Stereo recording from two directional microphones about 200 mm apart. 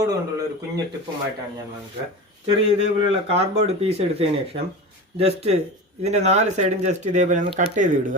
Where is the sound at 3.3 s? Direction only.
30° right (ahead or behind).